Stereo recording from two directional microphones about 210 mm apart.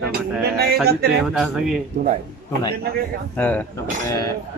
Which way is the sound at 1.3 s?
Centre (ahead or behind).